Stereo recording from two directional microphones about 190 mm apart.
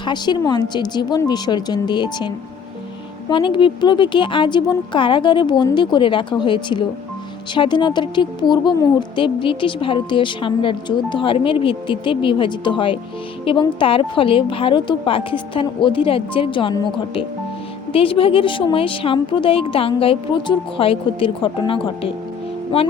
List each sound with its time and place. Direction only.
0.0 s speech: 25° left (ahead or behind)
17.9 s speech: 30° left (ahead or behind)